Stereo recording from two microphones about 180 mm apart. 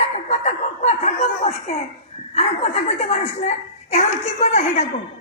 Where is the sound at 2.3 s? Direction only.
35° left (ahead or behind).